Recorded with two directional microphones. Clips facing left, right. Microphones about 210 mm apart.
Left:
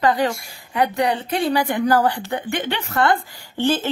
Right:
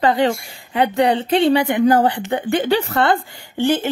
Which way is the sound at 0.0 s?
30° right (ahead or behind).